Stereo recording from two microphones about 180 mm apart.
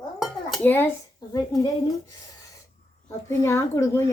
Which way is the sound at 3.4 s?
15° left (ahead or behind).